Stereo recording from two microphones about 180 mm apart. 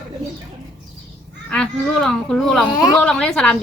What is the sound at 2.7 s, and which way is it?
Speech, 20° left (ahead or behind).